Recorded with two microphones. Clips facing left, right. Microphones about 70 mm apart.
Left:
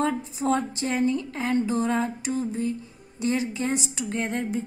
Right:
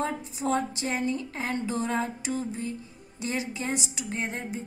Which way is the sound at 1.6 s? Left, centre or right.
Left.